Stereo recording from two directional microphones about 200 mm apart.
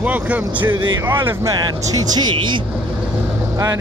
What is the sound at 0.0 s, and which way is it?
Speech, 5° right (ahead or behind).